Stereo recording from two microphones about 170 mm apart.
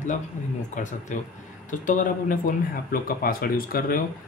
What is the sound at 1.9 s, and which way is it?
Speech, 50° left (ahead or behind).